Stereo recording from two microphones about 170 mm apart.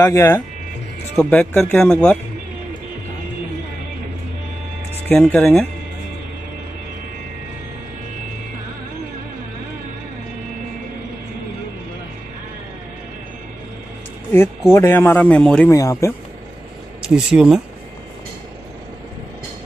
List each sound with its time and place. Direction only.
0.0 s speech: 20° left (ahead or behind)
5.0 s speech: 10° left (ahead or behind)
14.7 s speech: 15° left (ahead or behind)
15.7 s speech: 20° left (ahead or behind)
17.0 s speech: 5° right (ahead or behind)